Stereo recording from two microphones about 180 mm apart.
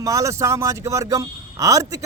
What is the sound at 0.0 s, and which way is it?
Speech, 20° right (ahead or behind).